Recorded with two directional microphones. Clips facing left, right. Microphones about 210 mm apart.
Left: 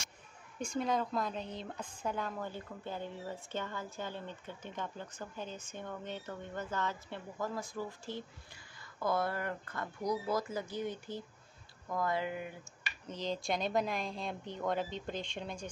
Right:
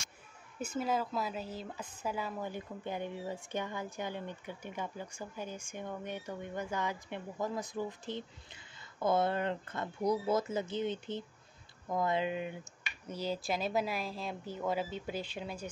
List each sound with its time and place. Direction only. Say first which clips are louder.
0.6 s a woman's voice: even; 5° right (ahead or behind); by 12.5 s 20° right (ahead or behind)
13.0 s speech: right 1 dB; 10° right (ahead or behind)